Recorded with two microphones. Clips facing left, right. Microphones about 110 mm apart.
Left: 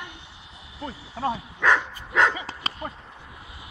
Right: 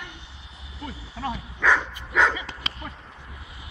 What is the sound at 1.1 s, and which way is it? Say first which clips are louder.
Speech: left 4 dB; 35° left (ahead or behind).